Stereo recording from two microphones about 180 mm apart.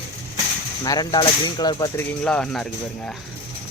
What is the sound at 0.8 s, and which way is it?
Speech, 20° left (ahead or behind).